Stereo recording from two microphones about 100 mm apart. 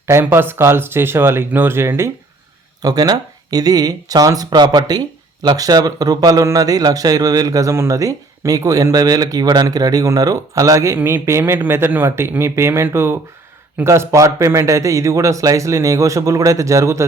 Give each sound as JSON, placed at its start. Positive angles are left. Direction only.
{"t": 0.1, "sound": "speech", "side_deg": -25}
{"t": 2.8, "sound": "speech", "side_deg": -40}